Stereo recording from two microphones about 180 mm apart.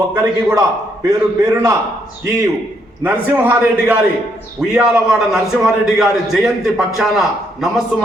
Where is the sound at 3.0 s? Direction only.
10° right (ahead or behind).